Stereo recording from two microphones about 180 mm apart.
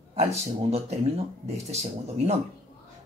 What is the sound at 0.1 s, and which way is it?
Speech, 35° right (ahead or behind).